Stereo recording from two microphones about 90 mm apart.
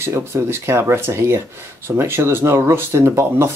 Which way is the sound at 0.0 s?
30° right (ahead or behind).